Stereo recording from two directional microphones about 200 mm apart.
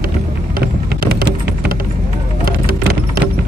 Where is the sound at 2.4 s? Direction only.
50° right (ahead or behind).